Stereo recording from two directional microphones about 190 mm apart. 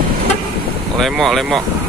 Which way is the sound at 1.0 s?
Centre (ahead or behind).